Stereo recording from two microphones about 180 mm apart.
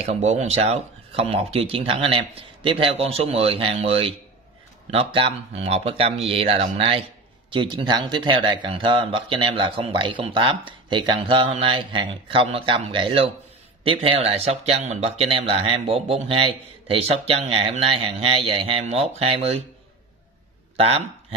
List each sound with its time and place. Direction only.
0.0 s speech: 35° right (ahead or behind)
20.7 s a man's voice: 35° right (ahead or behind)